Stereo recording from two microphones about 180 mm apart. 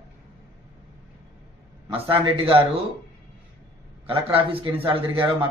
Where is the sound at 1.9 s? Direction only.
30° right (ahead or behind).